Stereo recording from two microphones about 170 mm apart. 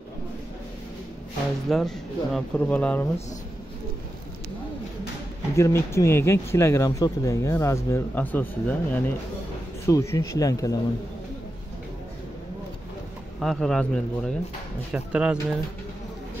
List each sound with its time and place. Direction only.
1.7 s speech: centre (ahead or behind)
5.6 s speech: 15° left (ahead or behind)
13.4 s a man's voice: centre (ahead or behind)